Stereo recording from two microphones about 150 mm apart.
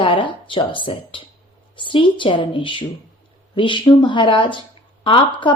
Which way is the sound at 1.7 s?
35° left (ahead or behind).